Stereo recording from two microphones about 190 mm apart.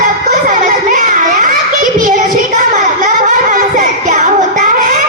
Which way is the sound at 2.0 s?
45° right (ahead or behind).